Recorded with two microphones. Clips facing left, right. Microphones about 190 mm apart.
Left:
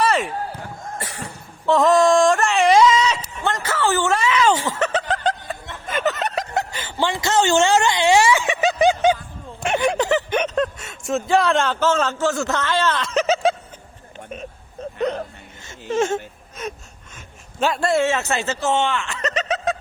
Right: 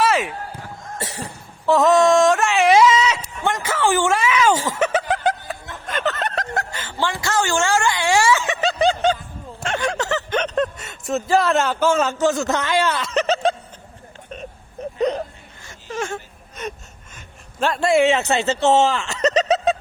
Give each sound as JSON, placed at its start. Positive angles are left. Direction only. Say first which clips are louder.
{"t": 0.0, "sound": "basketball bounce", "louder": "right 1 dB", "side_deg": 0}
{"t": 0.9, "sound": "cough", "louder": "right 4 dB", "side_deg": -25}
{"t": 1.6, "sound": "a sound", "louder": "right 1 dB", "side_deg": 0}
{"t": 4.7, "sound": "snicker", "louder": "right 2 dB", "side_deg": -10}
{"t": 6.5, "sound": "a sound", "louder": "left 2 dB", "side_deg": 15}
{"t": 10.5, "sound": "a man's voice", "louder": "even", "side_deg": 0}
{"t": 15.6, "sound": "whimper", "louder": "left 7 dB", "side_deg": 25}
{"t": 16.6, "sound": "gasp", "louder": "even", "side_deg": 0}
{"t": 17.6, "sound": "speech", "louder": "right 1 dB", "side_deg": 0}
{"t": 18.0, "sound": "speech", "louder": "right 4 dB", "side_deg": -15}
{"t": 18.6, "sound": "speech", "louder": "right 5 dB", "side_deg": -40}